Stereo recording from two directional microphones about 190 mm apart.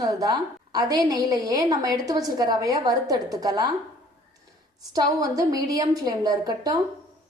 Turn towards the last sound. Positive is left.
turn(degrees=-20)  # may be behind; listen again after turning